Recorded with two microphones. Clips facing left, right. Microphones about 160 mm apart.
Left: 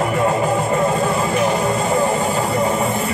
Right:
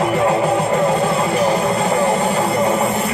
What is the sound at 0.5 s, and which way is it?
Music, 70° right (ahead or behind).